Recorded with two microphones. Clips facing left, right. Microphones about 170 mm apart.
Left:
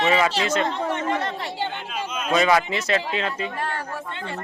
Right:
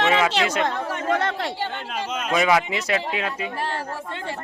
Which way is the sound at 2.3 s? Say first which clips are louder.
Left 1 dB; 10° right (ahead or behind).